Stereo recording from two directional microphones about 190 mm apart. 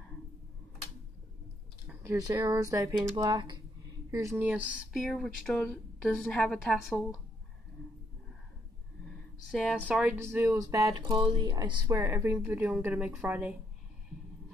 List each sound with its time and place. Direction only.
2.0 s speech: 20° right (ahead or behind)
4.3 s speech: 5° right (ahead or behind)
9.5 s speech: centre (ahead or behind); by 11.8 s 25° right (ahead or behind)
11.9 s speech: 15° right (ahead or behind)